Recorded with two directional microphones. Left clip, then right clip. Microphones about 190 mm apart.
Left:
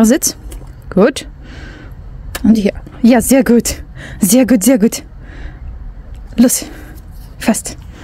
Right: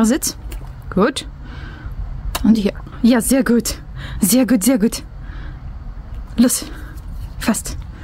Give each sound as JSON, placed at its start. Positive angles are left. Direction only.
{"t": 0.0, "sound": "speech", "side_deg": 25}
{"t": 0.8, "sound": "a sound", "side_deg": 25}
{"t": 2.4, "sound": "a woman's voice", "side_deg": 25}